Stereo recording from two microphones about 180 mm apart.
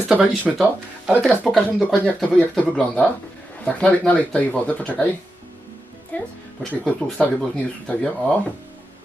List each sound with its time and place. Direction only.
0.1 s speech: 5° right (ahead or behind)
6.1 s speech: 5° left (ahead or behind)